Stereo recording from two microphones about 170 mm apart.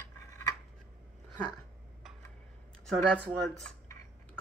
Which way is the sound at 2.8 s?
5° left (ahead or behind).